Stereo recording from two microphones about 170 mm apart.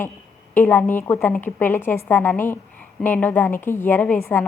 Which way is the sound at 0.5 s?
10° left (ahead or behind).